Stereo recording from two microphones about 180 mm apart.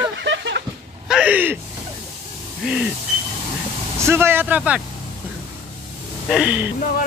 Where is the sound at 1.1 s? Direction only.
5° right (ahead or behind).